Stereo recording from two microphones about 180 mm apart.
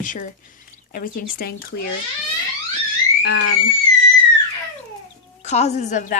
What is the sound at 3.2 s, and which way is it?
Speech, 70° left (ahead or behind).